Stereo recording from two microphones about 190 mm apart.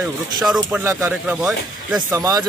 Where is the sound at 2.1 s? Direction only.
20° right (ahead or behind).